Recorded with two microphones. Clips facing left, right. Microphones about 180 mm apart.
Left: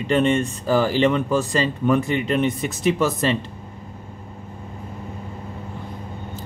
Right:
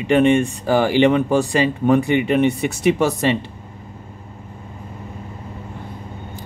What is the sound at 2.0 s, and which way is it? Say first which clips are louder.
Speech: right 4 dB; 65° right (ahead or behind).